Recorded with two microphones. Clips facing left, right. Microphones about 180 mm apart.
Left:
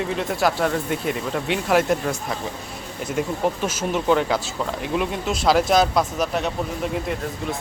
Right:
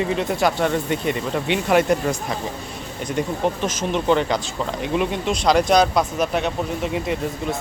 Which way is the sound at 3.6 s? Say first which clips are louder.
Right 1 dB; 5° left (ahead or behind).